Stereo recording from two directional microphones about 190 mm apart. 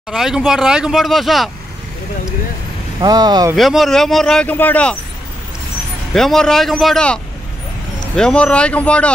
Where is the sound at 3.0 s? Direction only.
20° right (ahead or behind).